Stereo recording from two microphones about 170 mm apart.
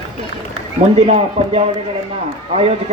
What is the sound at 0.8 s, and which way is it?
Speech, 40° right (ahead or behind).